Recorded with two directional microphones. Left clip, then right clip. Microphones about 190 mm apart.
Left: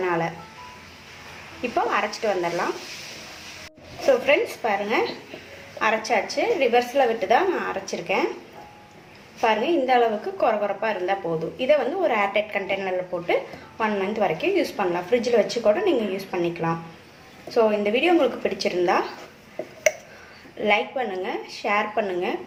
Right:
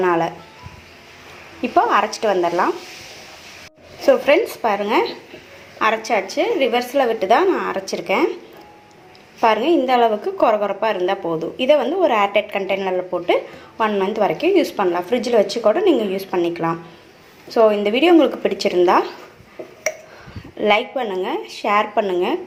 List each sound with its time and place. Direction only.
0.0 s speech: 40° right (ahead or behind)
1.7 s a woman's voice: 35° right (ahead or behind)
4.0 s a woman's voice: 35° right (ahead or behind)
9.4 s a woman's voice: 40° right (ahead or behind)
20.6 s a woman's voice: 35° right (ahead or behind)